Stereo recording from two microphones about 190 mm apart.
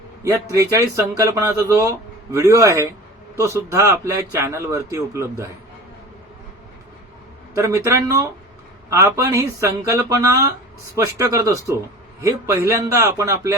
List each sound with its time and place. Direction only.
0.3 s speech: 15° right (ahead or behind)
7.5 s speech: 15° right (ahead or behind)